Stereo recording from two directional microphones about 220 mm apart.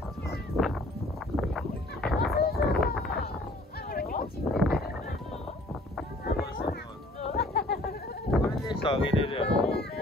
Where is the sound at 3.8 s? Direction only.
45° left (ahead or behind).